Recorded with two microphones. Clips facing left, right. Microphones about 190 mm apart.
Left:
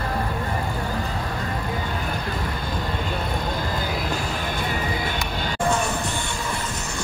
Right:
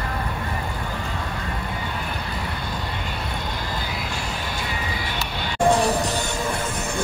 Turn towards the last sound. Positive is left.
turn(degrees=-35)  # may be behind; listen again after turning